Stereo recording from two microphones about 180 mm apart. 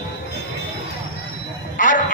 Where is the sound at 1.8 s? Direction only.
45° left (ahead or behind).